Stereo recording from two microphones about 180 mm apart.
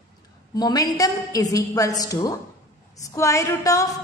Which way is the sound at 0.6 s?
20° left (ahead or behind).